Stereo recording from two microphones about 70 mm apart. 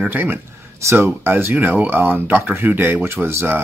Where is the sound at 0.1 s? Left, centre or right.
Right.